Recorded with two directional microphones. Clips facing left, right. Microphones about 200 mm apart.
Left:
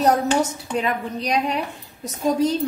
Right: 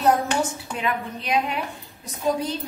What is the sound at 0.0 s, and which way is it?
A woman's voice, 40° left (ahead or behind).